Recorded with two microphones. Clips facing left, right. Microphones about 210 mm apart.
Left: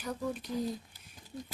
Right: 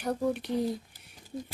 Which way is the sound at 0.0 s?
65° right (ahead or behind).